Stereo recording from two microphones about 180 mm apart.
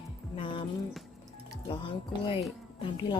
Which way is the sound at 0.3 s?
30° left (ahead or behind).